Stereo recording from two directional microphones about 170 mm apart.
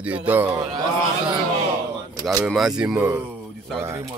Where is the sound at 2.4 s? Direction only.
5° right (ahead or behind).